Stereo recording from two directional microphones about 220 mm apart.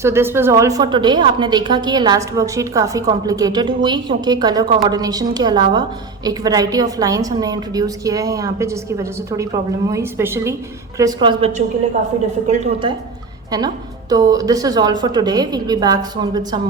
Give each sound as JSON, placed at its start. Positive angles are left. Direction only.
{"t": 0.0, "sound": "a woman's voice", "side_deg": -10}